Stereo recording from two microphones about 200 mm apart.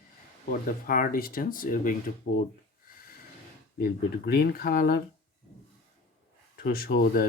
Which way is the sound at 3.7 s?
50° left (ahead or behind).